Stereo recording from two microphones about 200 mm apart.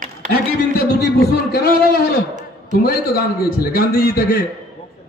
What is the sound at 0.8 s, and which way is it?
A man's voice, 50° left (ahead or behind).